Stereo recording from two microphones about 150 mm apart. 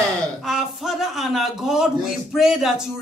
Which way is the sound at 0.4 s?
Centre (ahead or behind).